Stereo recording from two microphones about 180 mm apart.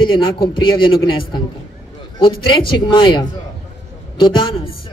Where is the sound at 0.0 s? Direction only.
25° left (ahead or behind).